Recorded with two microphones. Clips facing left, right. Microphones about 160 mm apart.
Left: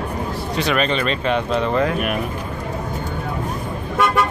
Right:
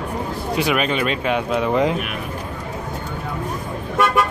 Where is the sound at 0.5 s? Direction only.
10° right (ahead or behind).